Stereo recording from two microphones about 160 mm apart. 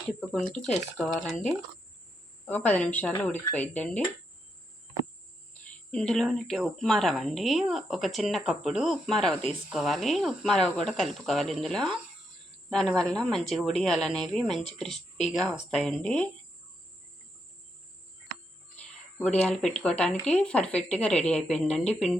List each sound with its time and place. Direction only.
0.2 s a woman's voice: 5° left (ahead or behind)
5.9 s a woman's voice: 5° left (ahead or behind)
19.2 s a woman's voice: 5° left (ahead or behind)